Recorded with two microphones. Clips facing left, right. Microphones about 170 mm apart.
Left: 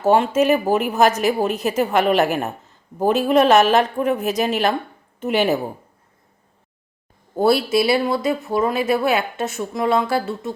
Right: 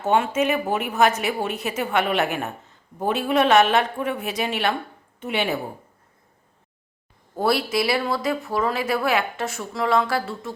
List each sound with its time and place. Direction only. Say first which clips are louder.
0.0 s a woman's voice: left 5 dB; 35° left (ahead or behind)
7.3 s speech: left 5 dB; 25° left (ahead or behind)